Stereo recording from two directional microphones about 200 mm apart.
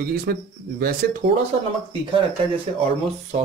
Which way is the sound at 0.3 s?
50° right (ahead or behind).